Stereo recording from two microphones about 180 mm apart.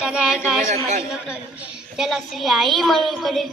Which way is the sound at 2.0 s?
Centre (ahead or behind).